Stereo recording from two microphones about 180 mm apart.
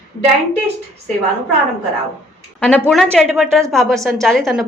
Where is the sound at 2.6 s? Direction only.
10° left (ahead or behind).